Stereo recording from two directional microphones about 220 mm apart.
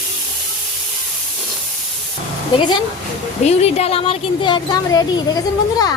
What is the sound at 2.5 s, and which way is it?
A woman's voice, 20° left (ahead or behind).